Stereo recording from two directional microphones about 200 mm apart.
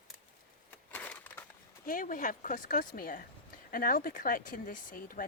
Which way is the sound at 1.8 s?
45° left (ahead or behind).